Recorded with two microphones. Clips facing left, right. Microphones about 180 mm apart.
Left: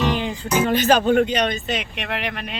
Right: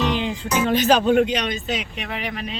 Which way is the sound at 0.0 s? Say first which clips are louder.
Even; centre (ahead or behind).